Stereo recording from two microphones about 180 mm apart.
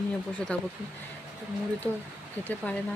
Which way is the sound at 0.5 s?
10° left (ahead or behind).